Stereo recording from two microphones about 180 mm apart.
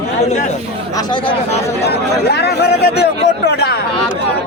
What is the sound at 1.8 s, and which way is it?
Speech, 65° left (ahead or behind).